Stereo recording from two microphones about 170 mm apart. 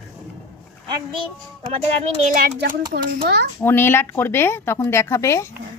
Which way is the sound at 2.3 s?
60° right (ahead or behind).